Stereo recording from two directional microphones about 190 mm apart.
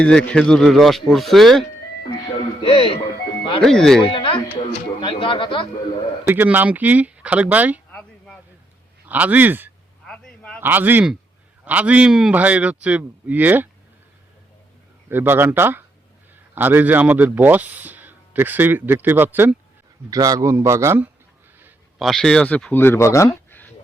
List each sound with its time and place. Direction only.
0.0 s speech: 5° left (ahead or behind)
2.6 s speech: 30° left (ahead or behind)
3.6 s speech: 5° left (ahead or behind)
4.1 s speech: 30° left (ahead or behind)
6.2 s a man's voice: 10° right (ahead or behind)
9.0 s a man's voice: 10° right (ahead or behind)
10.1 s a sound: 5° left (ahead or behind)
10.6 s a man's voice: 10° right (ahead or behind)
15.1 s a man's voice: 10° right (ahead or behind)
21.6 s speech: centre (ahead or behind)